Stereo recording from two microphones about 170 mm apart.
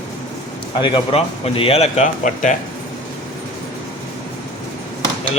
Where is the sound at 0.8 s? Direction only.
30° left (ahead or behind); by 2.5 s 50° left (ahead or behind).